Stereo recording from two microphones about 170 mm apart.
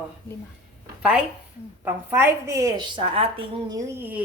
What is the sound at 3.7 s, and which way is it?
Speech, 15° right (ahead or behind).